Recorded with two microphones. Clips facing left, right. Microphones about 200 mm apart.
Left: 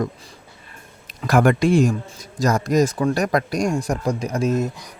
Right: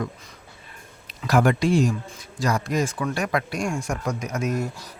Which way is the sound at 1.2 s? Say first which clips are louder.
Left 3 dB; 50° left (ahead or behind).